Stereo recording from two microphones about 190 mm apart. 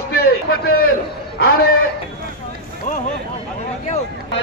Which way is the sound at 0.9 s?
50° left (ahead or behind).